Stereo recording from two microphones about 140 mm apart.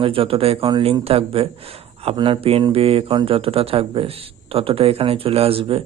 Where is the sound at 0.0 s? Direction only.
40° right (ahead or behind).